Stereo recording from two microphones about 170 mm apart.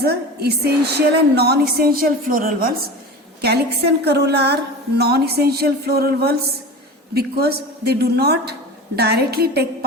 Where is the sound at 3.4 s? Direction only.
70° right (ahead or behind).